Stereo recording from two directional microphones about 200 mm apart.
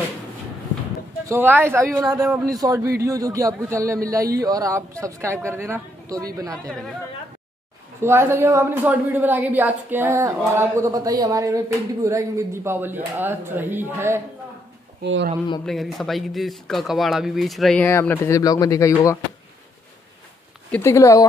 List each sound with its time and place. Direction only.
1.2 s a woman's voice: 10° right (ahead or behind)
2.2 s speech: centre (ahead or behind)
2.5 s a woman's voice: 15° right (ahead or behind)
8.0 s a woman's voice: 10° right (ahead or behind)
15.6 s speech: centre (ahead or behind)
20.7 s speech: 15° left (ahead or behind)